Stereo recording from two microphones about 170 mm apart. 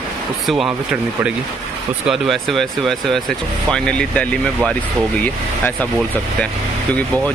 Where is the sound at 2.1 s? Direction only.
Centre (ahead or behind).